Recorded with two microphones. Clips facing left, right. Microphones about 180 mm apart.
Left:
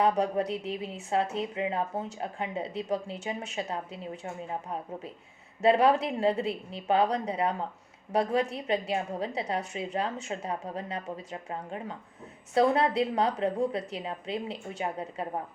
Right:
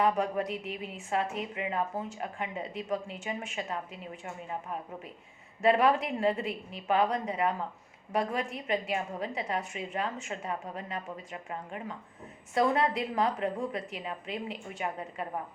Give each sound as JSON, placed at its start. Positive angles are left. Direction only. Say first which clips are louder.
{"t": 0.0, "sound": "speech", "louder": "left 2 dB", "side_deg": 35}
{"t": 5.6, "sound": "speech", "louder": "left 2 dB", "side_deg": 35}